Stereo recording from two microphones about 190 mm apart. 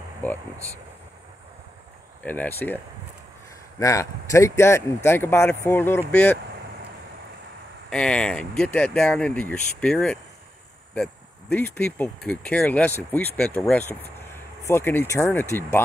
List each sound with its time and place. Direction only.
2.2 s speech: 10° left (ahead or behind)
3.8 s speech: 15° left (ahead or behind)
7.9 s speech: 5° left (ahead or behind)